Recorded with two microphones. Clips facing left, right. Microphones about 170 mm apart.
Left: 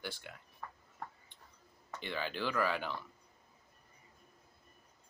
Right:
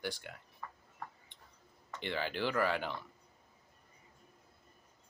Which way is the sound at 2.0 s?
60° right (ahead or behind).